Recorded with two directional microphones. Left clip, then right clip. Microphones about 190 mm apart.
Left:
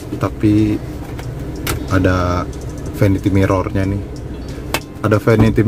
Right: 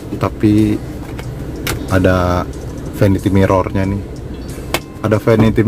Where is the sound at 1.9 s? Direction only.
20° right (ahead or behind).